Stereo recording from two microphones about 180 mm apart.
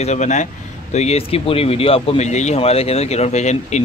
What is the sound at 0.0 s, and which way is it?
Speech, 40° left (ahead or behind).